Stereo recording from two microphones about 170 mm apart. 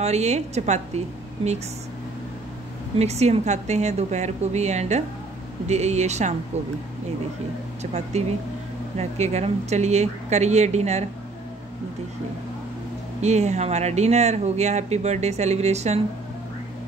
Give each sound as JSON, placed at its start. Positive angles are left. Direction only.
{"t": 0.0, "sound": "speech", "side_deg": -40}
{"t": 3.0, "sound": "speech", "side_deg": -40}
{"t": 7.8, "sound": "speech", "side_deg": -40}
{"t": 13.2, "sound": "speech", "side_deg": -40}